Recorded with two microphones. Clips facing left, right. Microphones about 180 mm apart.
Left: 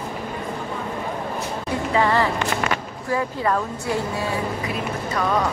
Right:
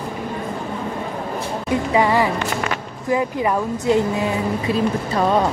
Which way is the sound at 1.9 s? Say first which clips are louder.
Right 2 dB; 15° right (ahead or behind).